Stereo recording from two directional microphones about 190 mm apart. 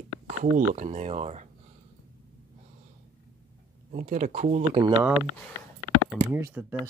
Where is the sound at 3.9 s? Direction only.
40° right (ahead or behind).